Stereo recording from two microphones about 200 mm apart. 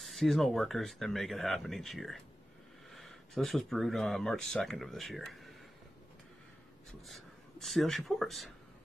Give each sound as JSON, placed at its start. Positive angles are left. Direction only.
{"t": 0.0, "sound": "speech", "side_deg": 0}
{"t": 7.1, "sound": "speech", "side_deg": 0}